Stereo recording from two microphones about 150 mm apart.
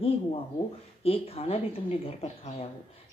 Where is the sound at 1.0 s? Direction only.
40° left (ahead or behind).